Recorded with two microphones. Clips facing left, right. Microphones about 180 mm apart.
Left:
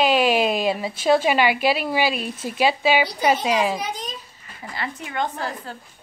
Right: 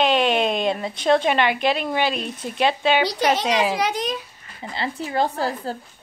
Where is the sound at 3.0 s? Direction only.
80° right.